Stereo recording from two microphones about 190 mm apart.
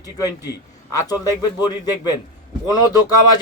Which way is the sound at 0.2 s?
20° left (ahead or behind).